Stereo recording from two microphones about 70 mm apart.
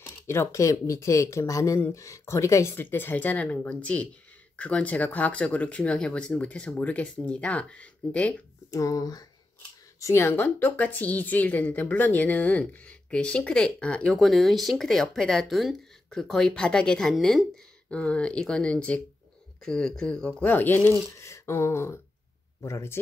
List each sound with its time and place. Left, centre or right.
0.0 s speech: left
2.7 s a woman's voice: left
8.6 s speech: left
9.9 s a sound: left
10.2 s a woman's voice: left; by 14.2 s centre
14.2 s speech: centre
17.8 s speech: centre
20.4 s a woman's voice: left
21.2 s a sound: left